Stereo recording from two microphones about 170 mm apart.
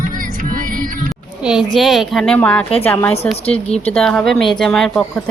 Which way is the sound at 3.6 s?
35° left (ahead or behind).